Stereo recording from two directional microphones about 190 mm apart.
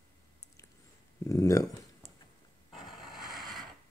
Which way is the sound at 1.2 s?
15° left (ahead or behind).